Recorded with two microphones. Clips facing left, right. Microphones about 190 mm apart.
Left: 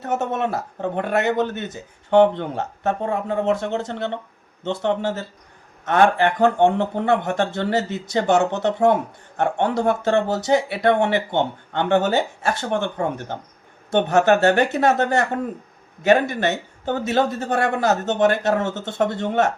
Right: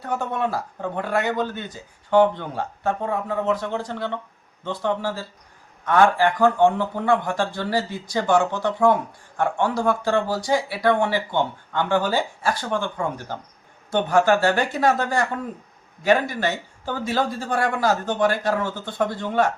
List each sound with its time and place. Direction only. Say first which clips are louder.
0.0 s speech: left 2 dB; 20° left (ahead or behind)